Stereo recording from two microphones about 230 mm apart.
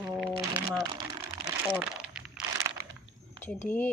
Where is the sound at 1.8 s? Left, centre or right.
Centre.